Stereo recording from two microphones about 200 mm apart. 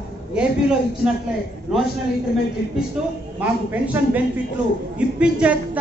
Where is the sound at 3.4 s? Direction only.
5° right (ahead or behind).